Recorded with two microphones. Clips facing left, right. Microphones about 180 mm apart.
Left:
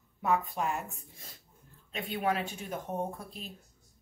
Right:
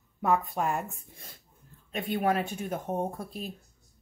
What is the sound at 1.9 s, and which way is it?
Speech, 50° right (ahead or behind).